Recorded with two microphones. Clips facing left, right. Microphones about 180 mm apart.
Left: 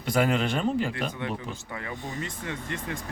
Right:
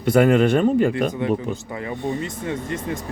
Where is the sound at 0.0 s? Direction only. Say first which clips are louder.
Right 9 dB; 55° right (ahead or behind).